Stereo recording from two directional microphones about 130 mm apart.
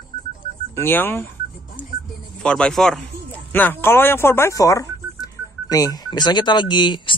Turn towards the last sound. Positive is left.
turn(degrees=35)  # may be behind; listen again after turning